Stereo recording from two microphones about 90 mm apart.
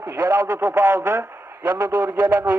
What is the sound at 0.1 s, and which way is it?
Speech, 20° right (ahead or behind).